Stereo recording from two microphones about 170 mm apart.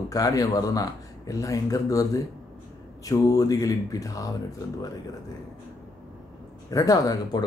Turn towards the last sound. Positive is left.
turn(degrees=20)  # may be behind; listen again after turning